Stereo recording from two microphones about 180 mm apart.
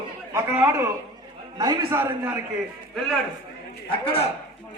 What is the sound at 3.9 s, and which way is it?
Speech, 30° left (ahead or behind).